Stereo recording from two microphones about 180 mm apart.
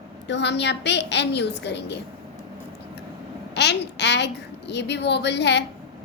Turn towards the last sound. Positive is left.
turn(degrees=70)  # may be behind; listen again after turning